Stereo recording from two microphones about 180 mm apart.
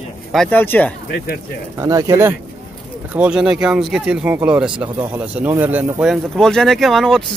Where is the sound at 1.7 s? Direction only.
20° right (ahead or behind).